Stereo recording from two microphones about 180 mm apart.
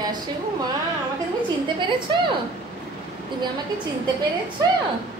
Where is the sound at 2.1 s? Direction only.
25° right (ahead or behind).